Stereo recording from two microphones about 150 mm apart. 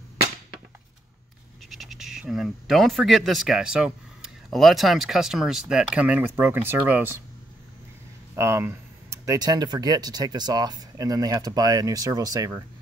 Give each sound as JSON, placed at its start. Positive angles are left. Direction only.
{"t": 1.7, "sound": "speech", "side_deg": 0}
{"t": 8.4, "sound": "speech", "side_deg": -15}